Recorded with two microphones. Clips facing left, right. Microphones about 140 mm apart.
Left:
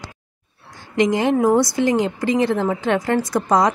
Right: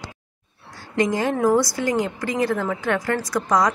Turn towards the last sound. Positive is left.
turn(degrees=25)  # may be behind; listen again after turning